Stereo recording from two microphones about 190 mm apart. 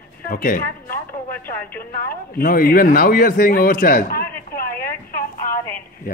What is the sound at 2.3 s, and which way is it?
A man's voice, 50° left (ahead or behind).